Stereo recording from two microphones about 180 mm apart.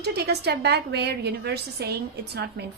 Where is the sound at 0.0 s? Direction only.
65° right (ahead or behind).